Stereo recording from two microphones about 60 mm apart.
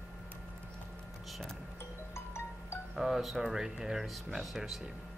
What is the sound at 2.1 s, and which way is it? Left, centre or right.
Music, left.